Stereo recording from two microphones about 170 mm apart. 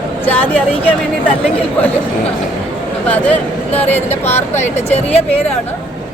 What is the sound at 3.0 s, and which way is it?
Speech, 10° left (ahead or behind).